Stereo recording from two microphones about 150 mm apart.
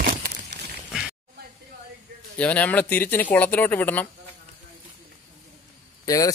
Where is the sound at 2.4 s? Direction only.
10° left (ahead or behind).